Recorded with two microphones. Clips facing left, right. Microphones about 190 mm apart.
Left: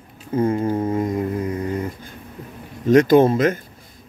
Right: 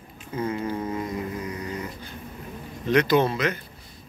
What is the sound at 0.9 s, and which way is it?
Mantra, 45° left (ahead or behind).